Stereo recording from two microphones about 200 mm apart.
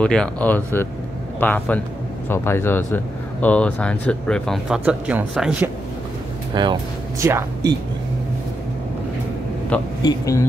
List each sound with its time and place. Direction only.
0.0 s speech: 5° left (ahead or behind)
6.5 s speech: 20° right (ahead or behind)
9.7 s speech: 5° left (ahead or behind)